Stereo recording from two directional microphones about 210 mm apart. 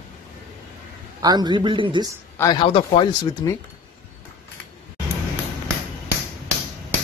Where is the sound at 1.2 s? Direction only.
20° right (ahead or behind).